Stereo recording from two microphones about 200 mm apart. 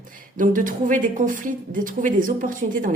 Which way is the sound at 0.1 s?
40° right (ahead or behind).